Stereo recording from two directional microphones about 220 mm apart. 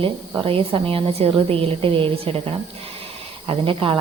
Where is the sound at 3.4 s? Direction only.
25° right (ahead or behind).